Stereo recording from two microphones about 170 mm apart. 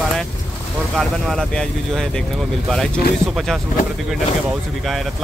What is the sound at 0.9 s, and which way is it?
Speech, centre (ahead or behind).